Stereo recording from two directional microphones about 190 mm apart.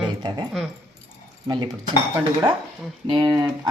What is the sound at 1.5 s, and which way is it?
Speech, 20° right (ahead or behind).